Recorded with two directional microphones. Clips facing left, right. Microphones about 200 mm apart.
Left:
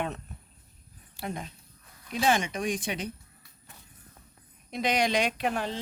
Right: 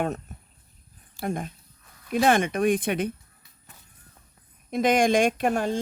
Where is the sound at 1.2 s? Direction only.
50° right (ahead or behind).